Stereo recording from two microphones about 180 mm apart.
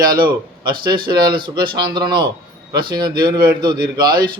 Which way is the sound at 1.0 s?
25° right (ahead or behind).